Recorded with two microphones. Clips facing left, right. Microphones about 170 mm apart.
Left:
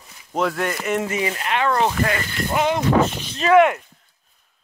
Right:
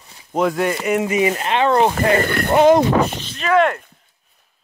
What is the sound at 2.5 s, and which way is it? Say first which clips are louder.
Speech: right 9 dB; 40° right (ahead or behind).